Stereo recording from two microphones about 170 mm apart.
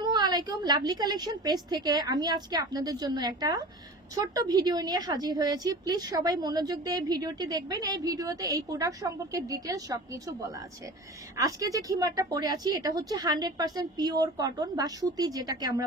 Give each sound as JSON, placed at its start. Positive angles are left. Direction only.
{"t": 0.0, "sound": "a woman's voice", "side_deg": -25}